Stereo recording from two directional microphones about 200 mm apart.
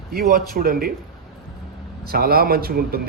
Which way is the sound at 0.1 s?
50° right (ahead or behind).